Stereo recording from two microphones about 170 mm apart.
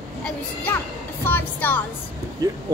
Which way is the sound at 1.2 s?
10° left (ahead or behind).